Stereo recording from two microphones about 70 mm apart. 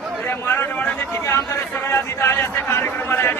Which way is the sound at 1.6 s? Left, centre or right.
Left.